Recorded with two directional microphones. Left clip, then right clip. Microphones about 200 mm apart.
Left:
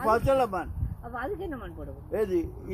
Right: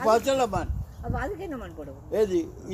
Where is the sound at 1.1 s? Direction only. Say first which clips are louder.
Right 1 dB; 30° right (ahead or behind).